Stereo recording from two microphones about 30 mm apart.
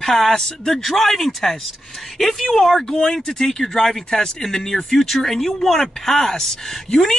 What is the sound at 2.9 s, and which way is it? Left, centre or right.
Speech, centre.